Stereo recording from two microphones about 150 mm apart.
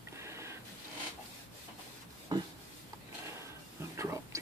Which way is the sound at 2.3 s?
25° right (ahead or behind).